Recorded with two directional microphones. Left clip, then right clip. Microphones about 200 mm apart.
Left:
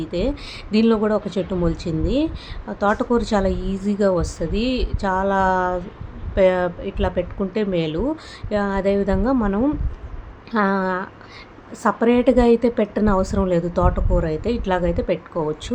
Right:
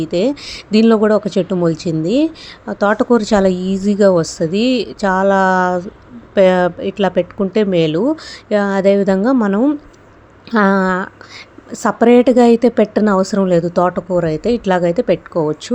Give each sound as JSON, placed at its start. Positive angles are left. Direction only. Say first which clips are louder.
{"t": 0.0, "sound": "a woman's voice", "louder": "right 8 dB", "side_deg": -35}